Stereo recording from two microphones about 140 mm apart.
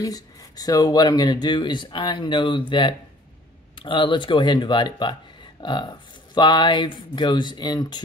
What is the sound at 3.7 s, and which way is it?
Speech, 35° left (ahead or behind).